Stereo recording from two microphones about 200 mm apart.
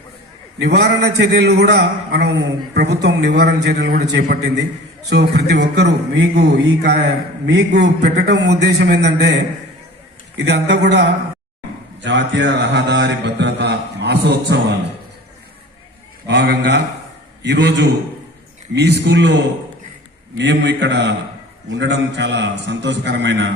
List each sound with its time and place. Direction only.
0.6 s a man's voice: 55° right (ahead or behind)
16.2 s a man's voice: 60° right (ahead or behind)
20.4 s a man's voice: 60° right (ahead or behind)